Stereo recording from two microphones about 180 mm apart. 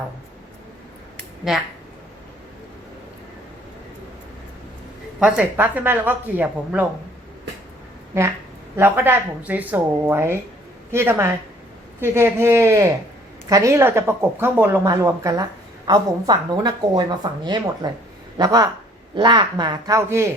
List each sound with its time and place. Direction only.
1.5 s speech: 5° right (ahead or behind)
5.2 s a woman's voice: 10° right (ahead or behind)
8.7 s a woman's voice: 10° right (ahead or behind)